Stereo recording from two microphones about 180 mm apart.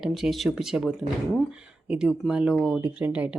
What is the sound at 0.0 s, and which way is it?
Speech, centre (ahead or behind).